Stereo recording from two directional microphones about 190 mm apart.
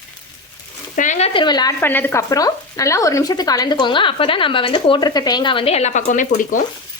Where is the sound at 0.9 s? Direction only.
40° left (ahead or behind).